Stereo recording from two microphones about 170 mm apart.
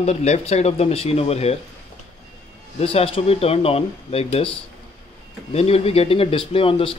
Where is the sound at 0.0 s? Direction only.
40° left (ahead or behind).